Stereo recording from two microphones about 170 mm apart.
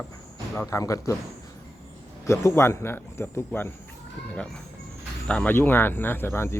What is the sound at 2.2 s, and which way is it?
Speech, 15° left (ahead or behind).